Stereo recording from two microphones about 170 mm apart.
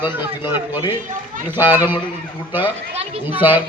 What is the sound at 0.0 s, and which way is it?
Speech, 10° right (ahead or behind).